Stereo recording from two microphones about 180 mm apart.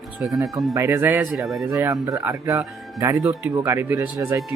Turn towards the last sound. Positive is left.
turn(degrees=-15)  # may be behind; listen again after turning